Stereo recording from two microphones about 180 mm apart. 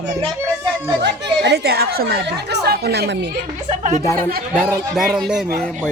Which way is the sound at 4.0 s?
15° left (ahead or behind).